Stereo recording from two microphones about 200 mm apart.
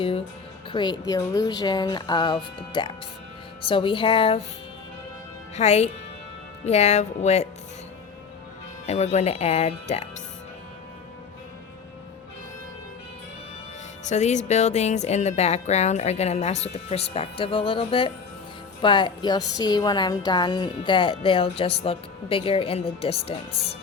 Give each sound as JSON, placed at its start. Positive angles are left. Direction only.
{"t": 0.7, "sound": "speech", "side_deg": 20}
{"t": 5.5, "sound": "speech", "side_deg": 35}
{"t": 8.9, "sound": "speech", "side_deg": 35}
{"t": 14.0, "sound": "speech", "side_deg": 35}